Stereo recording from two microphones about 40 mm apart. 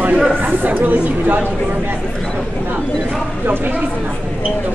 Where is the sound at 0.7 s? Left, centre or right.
Right.